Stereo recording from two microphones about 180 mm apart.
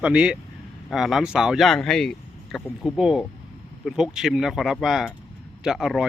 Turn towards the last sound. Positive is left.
turn(degrees=0)  # may be behind; listen again after turning